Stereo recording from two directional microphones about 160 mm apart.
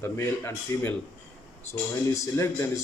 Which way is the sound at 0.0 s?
15° left (ahead or behind).